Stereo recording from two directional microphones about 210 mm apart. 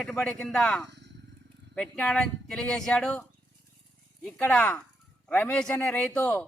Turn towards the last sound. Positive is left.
turn(degrees=5)  # may be behind; listen again after turning